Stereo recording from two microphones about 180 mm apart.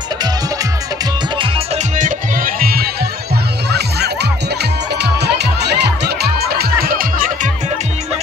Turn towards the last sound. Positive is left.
turn(degrees=-50)  # may be behind; listen again after turning